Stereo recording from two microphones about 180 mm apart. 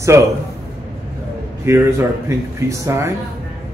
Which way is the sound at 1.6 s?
15° right (ahead or behind).